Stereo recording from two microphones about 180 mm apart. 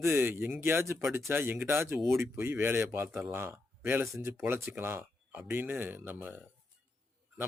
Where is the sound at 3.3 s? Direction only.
15° right (ahead or behind).